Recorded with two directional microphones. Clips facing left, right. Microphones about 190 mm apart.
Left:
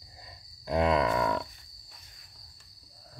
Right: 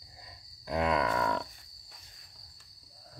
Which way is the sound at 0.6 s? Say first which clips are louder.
Left 3 dB; 30° left (ahead or behind).